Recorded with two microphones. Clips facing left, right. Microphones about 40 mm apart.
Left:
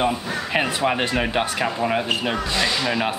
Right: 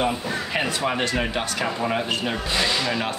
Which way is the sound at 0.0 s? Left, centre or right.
Centre.